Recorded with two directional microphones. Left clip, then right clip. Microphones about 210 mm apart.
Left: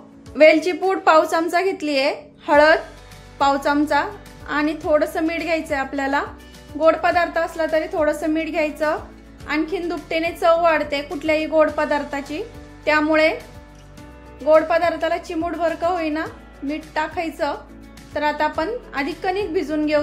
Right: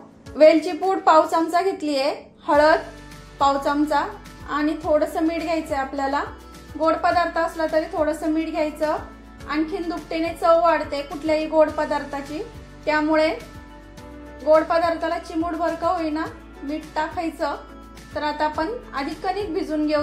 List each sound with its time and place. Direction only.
0.4 s a woman's voice: 25° left (ahead or behind)
15.0 s speech: 30° left (ahead or behind)